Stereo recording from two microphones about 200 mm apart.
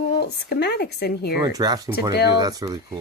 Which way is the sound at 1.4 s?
20° right (ahead or behind).